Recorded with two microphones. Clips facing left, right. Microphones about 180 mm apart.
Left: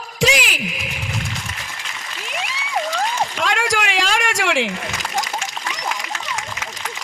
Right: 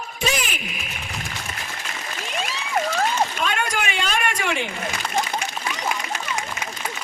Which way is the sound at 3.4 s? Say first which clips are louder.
Left 3 dB; 90° left.